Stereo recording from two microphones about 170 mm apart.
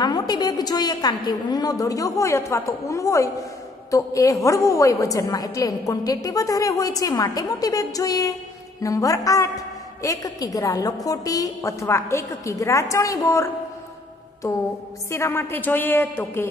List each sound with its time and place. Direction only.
0.0 s a woman's voice: 25° left (ahead or behind)